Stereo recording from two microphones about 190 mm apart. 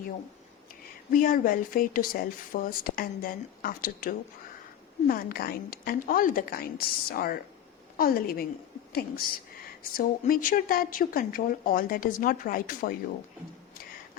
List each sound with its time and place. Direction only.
1.1 s speech: 45° left (ahead or behind)